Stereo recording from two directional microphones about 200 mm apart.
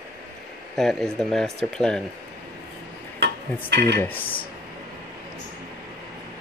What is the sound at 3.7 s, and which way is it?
Dishes, 50° right (ahead or behind).